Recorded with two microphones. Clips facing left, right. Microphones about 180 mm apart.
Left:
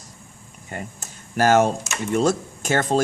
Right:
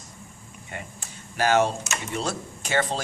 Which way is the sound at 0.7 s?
40° left (ahead or behind).